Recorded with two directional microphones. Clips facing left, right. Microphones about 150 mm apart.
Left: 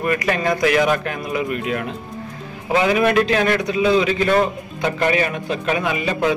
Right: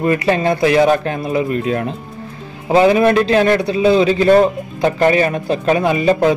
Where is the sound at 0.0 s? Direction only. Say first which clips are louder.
Right 5 dB; 30° right (ahead or behind).